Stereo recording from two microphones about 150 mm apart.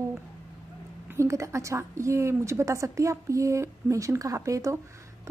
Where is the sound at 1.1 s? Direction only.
20° right (ahead or behind).